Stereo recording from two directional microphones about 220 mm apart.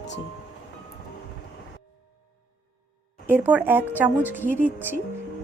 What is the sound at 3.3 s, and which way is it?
A woman's voice, 10° right (ahead or behind).